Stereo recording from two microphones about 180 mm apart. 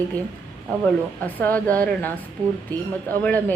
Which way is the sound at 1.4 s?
10° left (ahead or behind).